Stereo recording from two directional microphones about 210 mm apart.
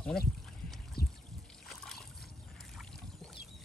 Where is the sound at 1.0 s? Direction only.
45° left (ahead or behind).